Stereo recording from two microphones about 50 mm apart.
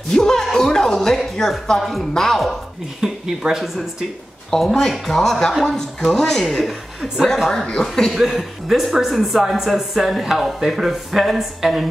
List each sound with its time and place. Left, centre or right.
0.1 s a woman's voice: centre
3.0 s speech: centre
4.5 s a woman's voice: centre
6.4 s speech: centre
7.6 s a woman's voice: centre
8.1 s speech: centre